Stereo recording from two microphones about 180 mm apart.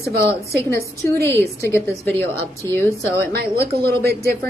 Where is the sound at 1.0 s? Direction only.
15° left (ahead or behind).